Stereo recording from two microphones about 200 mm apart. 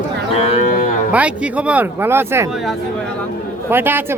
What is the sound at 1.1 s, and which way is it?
Speech, 5° right (ahead or behind).